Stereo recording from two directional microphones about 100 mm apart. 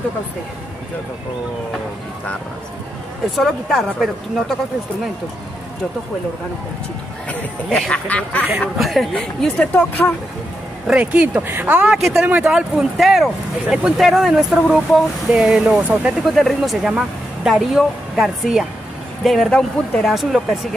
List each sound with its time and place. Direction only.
3.3 s speech: centre (ahead or behind)
7.2 s speech: 10° left (ahead or behind)
8.5 s speech: centre (ahead or behind)
9.1 s speech: 10° left (ahead or behind)
10.9 s speech: 15° right (ahead or behind)
11.9 s speech: 10° right (ahead or behind)